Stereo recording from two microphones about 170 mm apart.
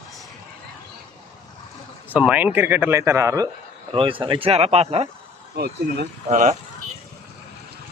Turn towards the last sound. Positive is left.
turn(degrees=-50)  # may be behind; listen again after turning